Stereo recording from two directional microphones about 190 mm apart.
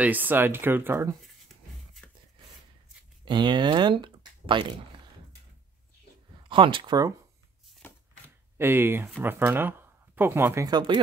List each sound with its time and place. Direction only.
0.0 s speech: 10° right (ahead or behind)
1.2 s a sound: centre (ahead or behind)
3.3 s speech: 25° right (ahead or behind)
6.5 s speech: 25° right (ahead or behind)
7.8 s a sound: 10° left (ahead or behind)
8.5 s speech: 10° right (ahead or behind)